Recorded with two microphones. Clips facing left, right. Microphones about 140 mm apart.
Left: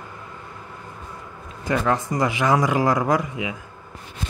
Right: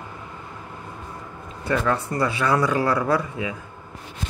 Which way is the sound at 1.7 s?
15° left (ahead or behind).